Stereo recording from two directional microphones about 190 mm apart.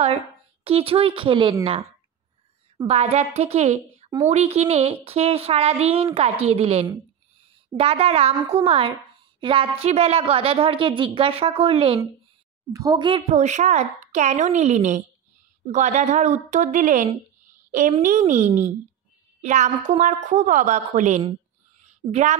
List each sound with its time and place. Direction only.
0.7 s a woman's voice: 30° right (ahead or behind)
2.9 s a woman's voice: 35° right (ahead or behind)
12.7 s a woman's voice: 20° right (ahead or behind); by 22.4 s 40° right (ahead or behind)